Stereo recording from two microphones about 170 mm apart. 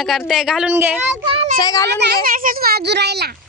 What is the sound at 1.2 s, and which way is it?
Speech, 35° right (ahead or behind).